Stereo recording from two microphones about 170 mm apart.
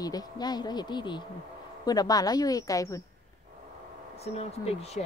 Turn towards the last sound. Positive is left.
turn(degrees=40)  # may be behind; listen again after turning